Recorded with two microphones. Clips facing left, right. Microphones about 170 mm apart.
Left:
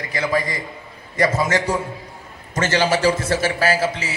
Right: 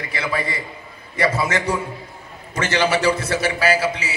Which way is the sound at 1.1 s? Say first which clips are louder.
Left 2 dB; 45° left (ahead or behind).